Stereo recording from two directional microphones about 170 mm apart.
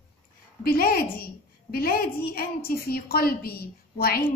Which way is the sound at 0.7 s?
60° left (ahead or behind).